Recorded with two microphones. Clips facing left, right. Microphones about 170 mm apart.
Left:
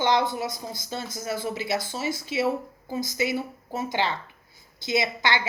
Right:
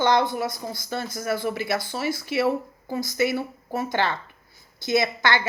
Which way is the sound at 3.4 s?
20° left (ahead or behind).